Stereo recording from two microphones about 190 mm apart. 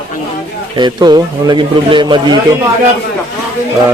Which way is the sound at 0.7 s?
25° right (ahead or behind).